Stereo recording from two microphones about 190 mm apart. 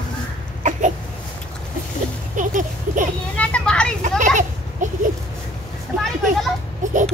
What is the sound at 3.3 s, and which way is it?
Children playing, 5° left (ahead or behind).